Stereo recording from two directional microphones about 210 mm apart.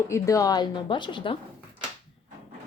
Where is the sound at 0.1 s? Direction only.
15° left (ahead or behind).